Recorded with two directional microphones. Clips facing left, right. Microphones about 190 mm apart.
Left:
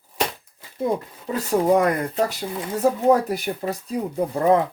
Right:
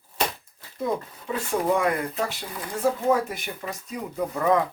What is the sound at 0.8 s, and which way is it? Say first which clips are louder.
Speech: left 4 dB; 35° left (ahead or behind).